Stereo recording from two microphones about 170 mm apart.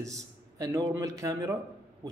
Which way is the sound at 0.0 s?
20° right (ahead or behind).